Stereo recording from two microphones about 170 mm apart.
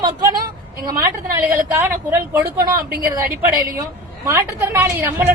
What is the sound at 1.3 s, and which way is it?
A woman's voice, 10° right (ahead or behind).